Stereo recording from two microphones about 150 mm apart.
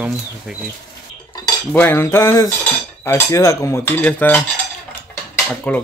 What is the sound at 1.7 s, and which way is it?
Cutlery, 15° left (ahead or behind).